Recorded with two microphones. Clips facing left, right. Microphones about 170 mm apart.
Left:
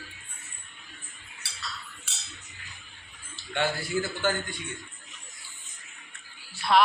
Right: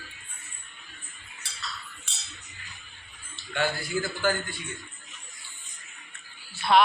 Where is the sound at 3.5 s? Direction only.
25° left (ahead or behind).